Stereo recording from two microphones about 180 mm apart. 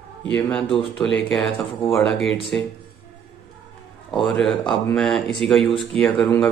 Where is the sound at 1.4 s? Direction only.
30° left (ahead or behind).